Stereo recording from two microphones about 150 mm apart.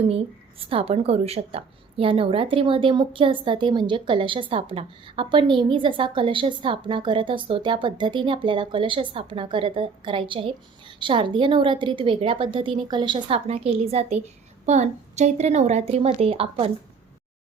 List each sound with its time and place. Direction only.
0.7 s a woman's voice: 40° right (ahead or behind)